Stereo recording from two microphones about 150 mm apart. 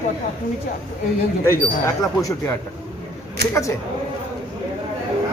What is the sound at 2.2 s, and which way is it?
Speech, 20° left (ahead or behind).